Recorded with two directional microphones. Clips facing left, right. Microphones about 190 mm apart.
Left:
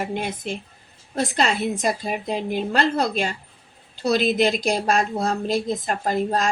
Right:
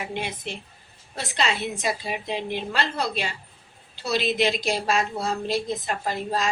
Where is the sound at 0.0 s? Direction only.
45° left (ahead or behind).